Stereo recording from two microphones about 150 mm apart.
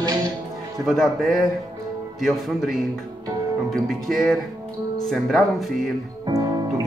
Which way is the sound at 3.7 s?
Centre (ahead or behind).